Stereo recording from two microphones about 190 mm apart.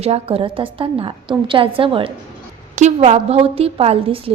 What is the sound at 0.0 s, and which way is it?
A woman's voice, 30° right (ahead or behind).